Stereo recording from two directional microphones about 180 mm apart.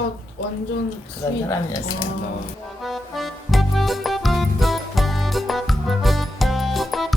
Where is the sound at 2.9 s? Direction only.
Centre (ahead or behind).